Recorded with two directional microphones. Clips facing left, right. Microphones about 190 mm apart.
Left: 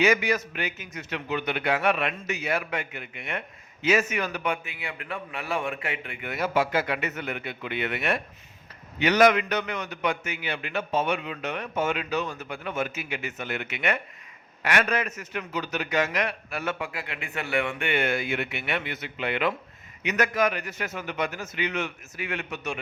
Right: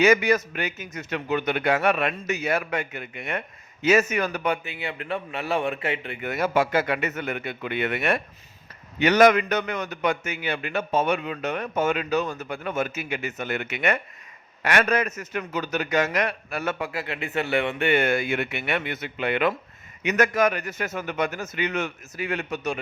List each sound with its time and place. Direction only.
0.0 s a man's voice: 45° right (ahead or behind)
6.2 s a man's voice: 50° right (ahead or behind)